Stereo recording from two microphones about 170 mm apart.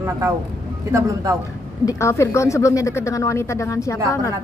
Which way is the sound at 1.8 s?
15° left (ahead or behind).